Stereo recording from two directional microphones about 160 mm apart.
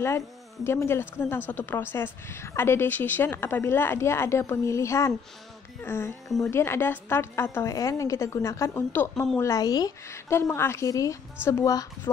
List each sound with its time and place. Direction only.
0.7 s speech: 15° left (ahead or behind)
6.2 s speech: centre (ahead or behind)
6.5 s a woman's voice: 15° left (ahead or behind)